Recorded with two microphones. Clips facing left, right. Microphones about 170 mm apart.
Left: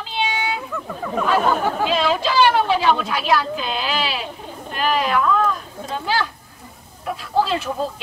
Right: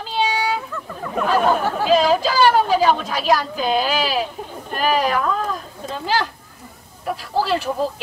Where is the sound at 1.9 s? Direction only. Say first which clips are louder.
Right 4 dB; 40° right (ahead or behind).